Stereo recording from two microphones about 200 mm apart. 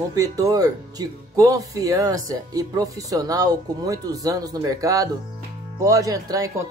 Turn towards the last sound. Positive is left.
turn(degrees=-15)  # may be behind; listen again after turning